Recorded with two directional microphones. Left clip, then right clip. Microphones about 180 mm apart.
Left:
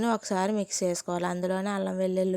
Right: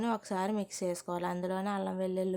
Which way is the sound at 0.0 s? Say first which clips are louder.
Left 6 dB; 25° left (ahead or behind).